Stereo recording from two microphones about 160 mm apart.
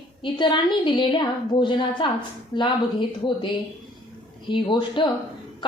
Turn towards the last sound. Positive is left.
turn(degrees=30)  # may be behind; listen again after turning